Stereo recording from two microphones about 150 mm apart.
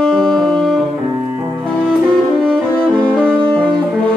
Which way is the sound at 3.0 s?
5° left (ahead or behind).